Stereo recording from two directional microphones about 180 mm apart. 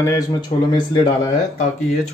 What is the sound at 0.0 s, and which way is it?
Speech, 20° left (ahead or behind).